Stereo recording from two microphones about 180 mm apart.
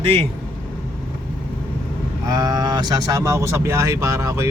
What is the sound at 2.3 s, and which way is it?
Speech, 20° right (ahead or behind).